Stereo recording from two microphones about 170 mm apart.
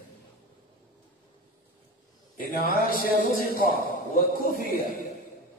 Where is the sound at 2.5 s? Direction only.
60° left (ahead or behind).